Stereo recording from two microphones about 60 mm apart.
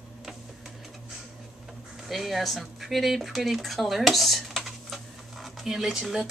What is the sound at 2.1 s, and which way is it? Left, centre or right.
A woman's voice, centre.